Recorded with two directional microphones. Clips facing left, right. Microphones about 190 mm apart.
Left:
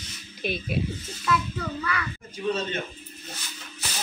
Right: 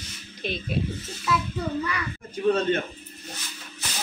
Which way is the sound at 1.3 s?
5° right (ahead or behind).